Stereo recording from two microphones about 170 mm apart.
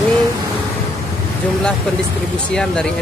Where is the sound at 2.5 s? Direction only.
5° left (ahead or behind).